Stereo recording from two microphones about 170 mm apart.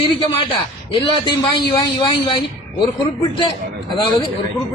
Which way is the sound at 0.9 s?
25° left (ahead or behind).